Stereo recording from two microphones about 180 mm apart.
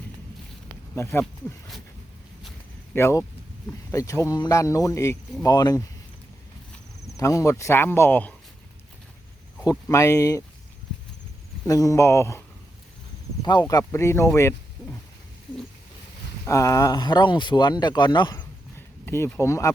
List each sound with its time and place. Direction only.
0.9 s speech: 15° left (ahead or behind)
2.9 s speech: 15° left (ahead or behind)
7.0 s speech: 15° left (ahead or behind)
9.6 s speech: 15° left (ahead or behind)
11.6 s speech: 20° left (ahead or behind)
13.4 s speech: 25° left (ahead or behind)
16.5 s speech: 15° left (ahead or behind)
19.0 s speech: 15° left (ahead or behind)